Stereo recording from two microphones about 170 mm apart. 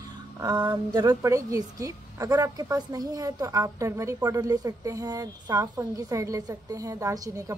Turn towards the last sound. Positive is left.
turn(degrees=-20)  # may be behind; listen again after turning